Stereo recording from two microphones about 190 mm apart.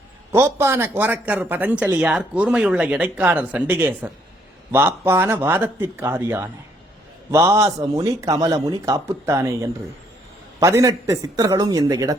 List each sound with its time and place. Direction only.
0.3 s speech: 15° right (ahead or behind)